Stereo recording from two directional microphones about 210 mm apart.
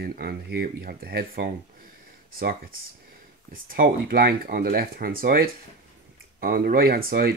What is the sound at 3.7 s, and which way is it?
Speech, 45° right (ahead or behind).